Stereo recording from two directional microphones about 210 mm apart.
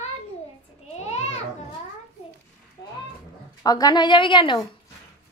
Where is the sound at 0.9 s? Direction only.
30° left (ahead or behind).